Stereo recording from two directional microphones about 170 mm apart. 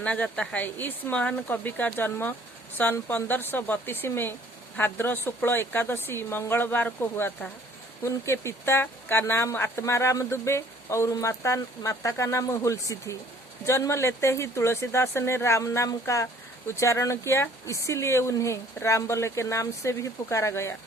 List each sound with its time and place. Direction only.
0.0 s speech: 5° left (ahead or behind)